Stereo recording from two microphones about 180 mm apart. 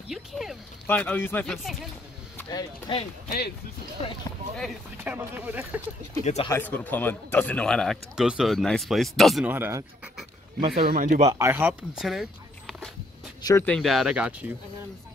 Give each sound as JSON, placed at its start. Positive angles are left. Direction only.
{"t": 0.1, "sound": "a sound", "side_deg": 0}
{"t": 0.8, "sound": "speech", "side_deg": 10}
{"t": 2.5, "sound": "speech", "side_deg": 30}
{"t": 3.3, "sound": "speech", "side_deg": 60}
{"t": 4.0, "sound": "speech", "side_deg": 35}
{"t": 4.9, "sound": "speech", "side_deg": -10}
{"t": 6.2, "sound": "speech", "side_deg": 35}
{"t": 6.5, "sound": "speech", "side_deg": 10}
{"t": 9.5, "sound": "speech", "side_deg": -15}
{"t": 10.7, "sound": "speech", "side_deg": -60}
{"t": 11.3, "sound": "speech", "side_deg": -15}
{"t": 13.4, "sound": "speech", "side_deg": 20}
{"t": 13.7, "sound": "speech", "side_deg": 0}